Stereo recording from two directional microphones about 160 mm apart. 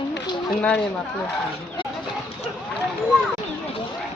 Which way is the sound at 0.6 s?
5° left (ahead or behind).